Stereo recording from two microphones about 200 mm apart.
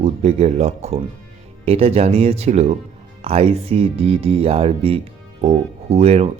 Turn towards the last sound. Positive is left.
turn(degrees=-30)  # may be behind; listen again after turning